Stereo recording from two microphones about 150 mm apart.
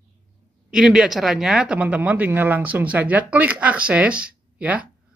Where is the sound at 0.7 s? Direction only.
5° right (ahead or behind).